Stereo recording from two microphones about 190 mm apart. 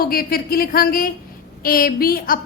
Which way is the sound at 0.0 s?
50° left (ahead or behind).